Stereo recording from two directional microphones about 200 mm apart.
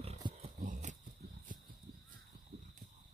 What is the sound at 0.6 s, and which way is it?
Horse, 40° right (ahead or behind).